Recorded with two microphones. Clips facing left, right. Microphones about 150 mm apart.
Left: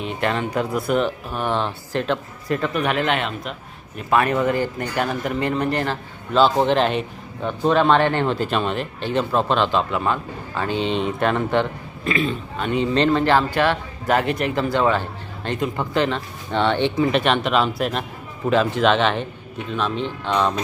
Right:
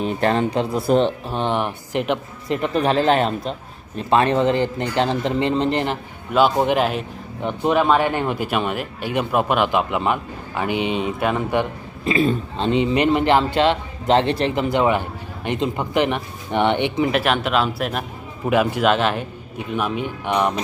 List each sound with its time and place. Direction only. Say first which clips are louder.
0.0 s speech: right 4 dB; 35° right (ahead or behind); by 2.8 s 20° right (ahead or behind)
2.8 s speech: right 4 dB; 30° right (ahead or behind); by 11.7 s 10° right (ahead or behind)
12.0 s speech: right 4 dB; 30° right (ahead or behind)
14.5 s speech: left 1 dB; 20° right (ahead or behind)
17.1 s speech: left 1 dB; 5° right (ahead or behind)